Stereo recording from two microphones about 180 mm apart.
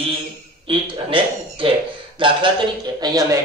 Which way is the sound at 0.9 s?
30° right (ahead or behind).